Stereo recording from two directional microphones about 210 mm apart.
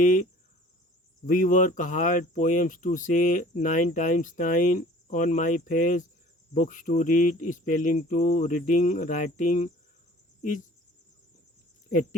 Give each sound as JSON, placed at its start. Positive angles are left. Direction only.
{"t": 0.0, "sound": "speech", "side_deg": 40}
{"t": 1.3, "sound": "speech", "side_deg": 40}